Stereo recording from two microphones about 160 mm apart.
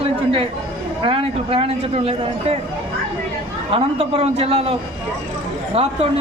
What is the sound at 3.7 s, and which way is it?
A man's voice, 35° right (ahead or behind).